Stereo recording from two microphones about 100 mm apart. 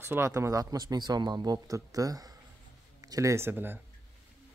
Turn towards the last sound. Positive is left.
turn(degrees=-20)  # may be behind; listen again after turning